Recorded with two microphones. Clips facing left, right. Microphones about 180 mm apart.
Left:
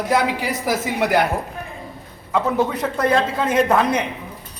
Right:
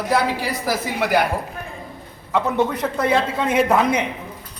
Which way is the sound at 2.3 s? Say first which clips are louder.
Even; centre (ahead or behind).